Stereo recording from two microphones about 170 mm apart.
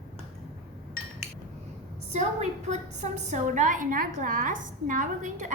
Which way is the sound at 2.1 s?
40° right (ahead or behind).